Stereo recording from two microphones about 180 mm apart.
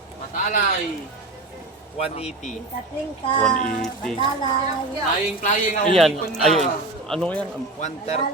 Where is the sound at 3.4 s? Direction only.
5° left (ahead or behind).